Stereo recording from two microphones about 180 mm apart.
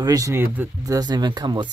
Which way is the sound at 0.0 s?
20° right (ahead or behind).